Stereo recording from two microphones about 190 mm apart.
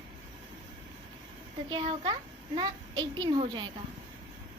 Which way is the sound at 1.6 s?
25° right (ahead or behind).